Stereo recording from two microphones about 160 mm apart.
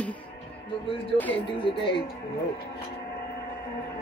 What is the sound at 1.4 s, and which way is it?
Speech, 30° left (ahead or behind).